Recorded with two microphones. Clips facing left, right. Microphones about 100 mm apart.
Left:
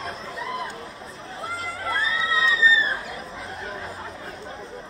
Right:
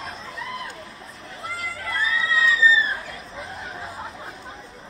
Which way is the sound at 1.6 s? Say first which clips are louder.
Even; 30° left (ahead or behind).